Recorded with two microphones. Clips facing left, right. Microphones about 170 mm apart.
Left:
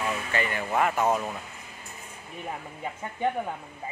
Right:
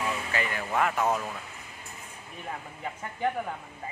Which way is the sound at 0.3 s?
Centre (ahead or behind).